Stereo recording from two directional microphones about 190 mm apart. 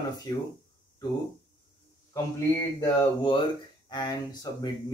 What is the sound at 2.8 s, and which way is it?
Speech, 25° left (ahead or behind).